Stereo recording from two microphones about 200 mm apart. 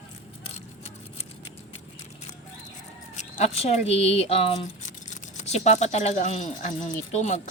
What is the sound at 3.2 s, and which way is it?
Speech, 35° left (ahead or behind).